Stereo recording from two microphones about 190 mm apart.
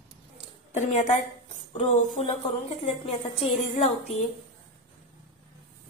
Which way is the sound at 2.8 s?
30° left (ahead or behind).